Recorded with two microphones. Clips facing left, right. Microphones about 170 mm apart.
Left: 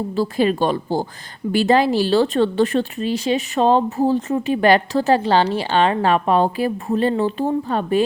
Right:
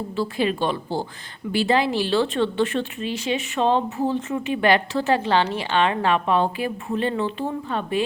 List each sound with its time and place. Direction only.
0.2 s speech: 40° left (ahead or behind)